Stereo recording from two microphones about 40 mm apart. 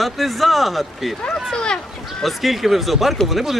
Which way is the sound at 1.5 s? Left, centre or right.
Left.